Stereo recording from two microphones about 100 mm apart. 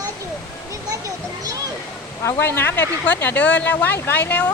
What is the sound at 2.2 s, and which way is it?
Speech, 25° left (ahead or behind).